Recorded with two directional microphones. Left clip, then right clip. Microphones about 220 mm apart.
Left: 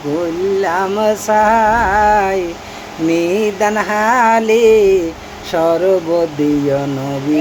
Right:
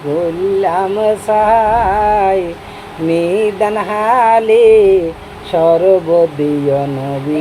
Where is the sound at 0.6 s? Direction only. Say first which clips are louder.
Right 2 dB; 20° left (ahead or behind).